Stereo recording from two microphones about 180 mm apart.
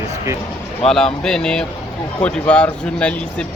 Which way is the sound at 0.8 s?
Centre (ahead or behind).